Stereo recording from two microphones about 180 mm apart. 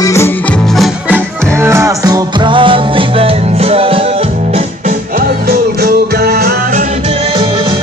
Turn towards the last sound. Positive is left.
turn(degrees=-60)  # may be behind; listen again after turning